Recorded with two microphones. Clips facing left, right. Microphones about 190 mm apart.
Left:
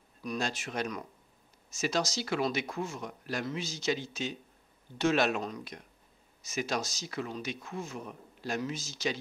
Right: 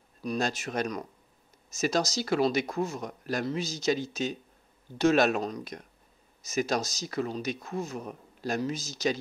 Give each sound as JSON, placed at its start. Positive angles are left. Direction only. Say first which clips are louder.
{"t": 0.2, "sound": "speech", "louder": "right 4 dB", "side_deg": -35}